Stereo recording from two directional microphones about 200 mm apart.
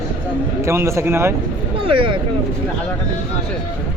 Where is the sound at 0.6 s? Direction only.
15° right (ahead or behind).